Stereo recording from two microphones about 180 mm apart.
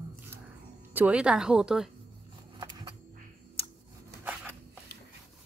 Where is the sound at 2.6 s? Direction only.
25° right (ahead or behind).